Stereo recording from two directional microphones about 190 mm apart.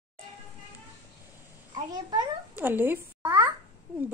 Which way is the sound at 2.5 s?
10° right (ahead or behind).